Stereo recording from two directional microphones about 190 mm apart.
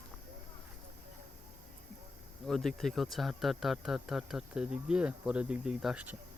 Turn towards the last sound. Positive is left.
turn(degrees=-5)  # may be behind; listen again after turning